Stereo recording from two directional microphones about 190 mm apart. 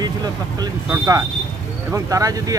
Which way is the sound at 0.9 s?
15° right (ahead or behind).